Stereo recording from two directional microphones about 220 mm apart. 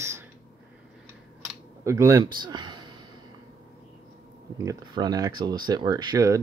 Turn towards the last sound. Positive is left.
turn(degrees=-15)  # may be behind; listen again after turning